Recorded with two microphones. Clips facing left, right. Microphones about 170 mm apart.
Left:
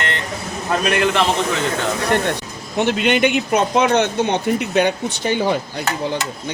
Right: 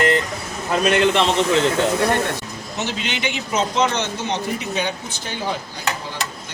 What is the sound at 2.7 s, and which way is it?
A man's voice, 55° left (ahead or behind).